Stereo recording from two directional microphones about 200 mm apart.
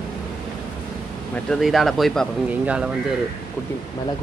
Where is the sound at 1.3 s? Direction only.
Centre (ahead or behind).